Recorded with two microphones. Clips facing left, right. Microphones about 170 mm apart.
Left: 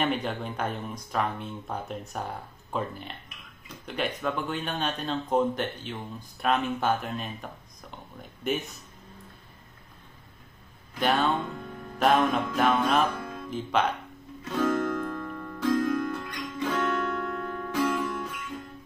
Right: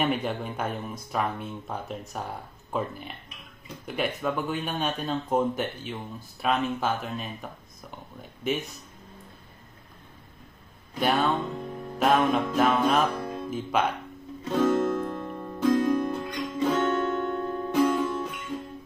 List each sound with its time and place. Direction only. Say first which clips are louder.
0.0 s speech: right 1 dB; 10° right (ahead or behind)
11.0 s speech: right 1 dB; centre (ahead or behind)
13.2 s music: right 4 dB; 30° right (ahead or behind)
13.5 s speech: even; 10° right (ahead or behind)
14.4 s music: right 3 dB; 25° right (ahead or behind)